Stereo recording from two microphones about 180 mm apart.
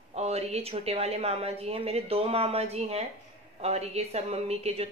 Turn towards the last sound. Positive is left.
turn(degrees=-35)  # may be behind; listen again after turning